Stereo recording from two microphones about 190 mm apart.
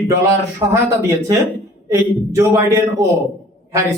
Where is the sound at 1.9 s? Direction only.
15° right (ahead or behind).